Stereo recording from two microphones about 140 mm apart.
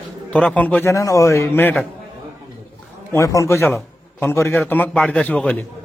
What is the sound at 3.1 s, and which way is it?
A man's voice, 25° left (ahead or behind).